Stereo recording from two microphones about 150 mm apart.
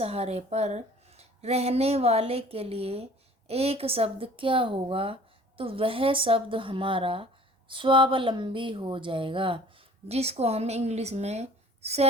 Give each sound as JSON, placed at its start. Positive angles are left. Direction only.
{"t": 0.0, "sound": "speech", "side_deg": -45}